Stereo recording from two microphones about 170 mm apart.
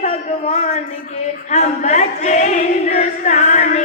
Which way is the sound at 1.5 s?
40° left (ahead or behind).